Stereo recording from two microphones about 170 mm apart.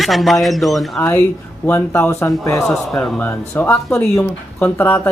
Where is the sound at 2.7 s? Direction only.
5° left (ahead or behind).